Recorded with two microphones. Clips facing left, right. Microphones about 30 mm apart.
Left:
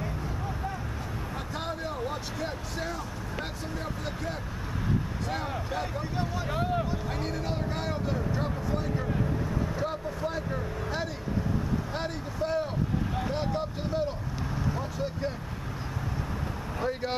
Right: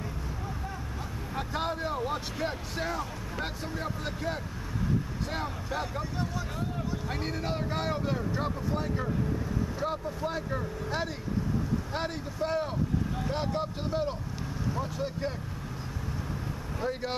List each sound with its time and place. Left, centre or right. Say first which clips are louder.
1.3 s speech: right 5 dB; centre
6.5 s speech: left 7 dB; left
7.1 s speech: left 1 dB; centre
16.8 s speech: left 2 dB; centre